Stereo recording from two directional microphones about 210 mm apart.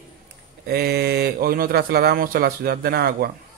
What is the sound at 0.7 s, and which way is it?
Speech, 50° right (ahead or behind).